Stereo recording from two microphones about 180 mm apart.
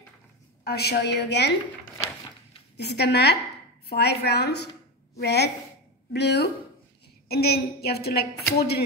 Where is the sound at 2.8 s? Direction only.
70° left (ahead or behind).